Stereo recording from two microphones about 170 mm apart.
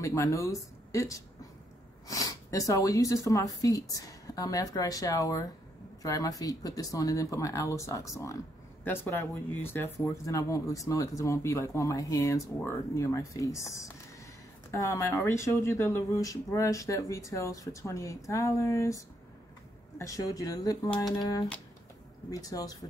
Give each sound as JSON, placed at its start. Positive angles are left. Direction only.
{"t": 0.0, "sound": "speech", "side_deg": 15}